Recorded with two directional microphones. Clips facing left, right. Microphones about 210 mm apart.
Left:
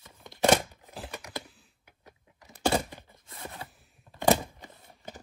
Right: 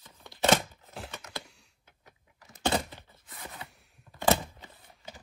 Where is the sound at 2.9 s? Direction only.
15° left (ahead or behind).